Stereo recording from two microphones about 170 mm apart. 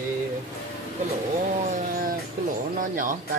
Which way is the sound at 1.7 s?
55° right (ahead or behind).